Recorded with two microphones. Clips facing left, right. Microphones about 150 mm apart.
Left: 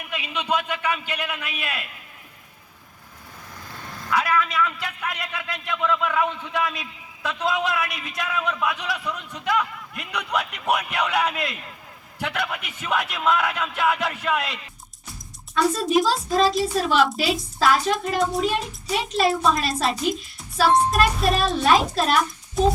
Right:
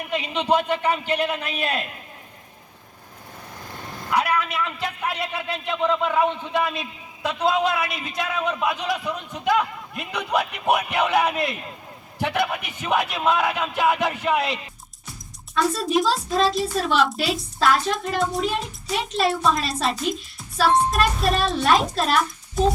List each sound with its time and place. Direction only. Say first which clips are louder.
0.0 s a man's voice: right 5 dB; 35° right (ahead or behind)
4.1 s a man's voice: even; 30° right (ahead or behind)
15.5 s a child's voice: left 1 dB; centre (ahead or behind)